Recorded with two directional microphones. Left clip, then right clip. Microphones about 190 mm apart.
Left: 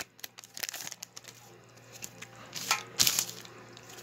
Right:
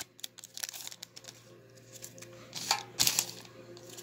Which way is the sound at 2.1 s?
15° left (ahead or behind).